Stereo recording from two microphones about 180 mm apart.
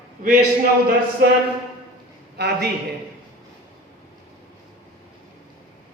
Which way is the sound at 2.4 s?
65° right (ahead or behind).